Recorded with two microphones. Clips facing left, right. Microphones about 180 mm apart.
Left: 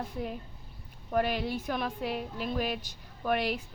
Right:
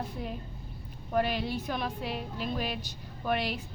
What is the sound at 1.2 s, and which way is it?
Speech, 50° left (ahead or behind).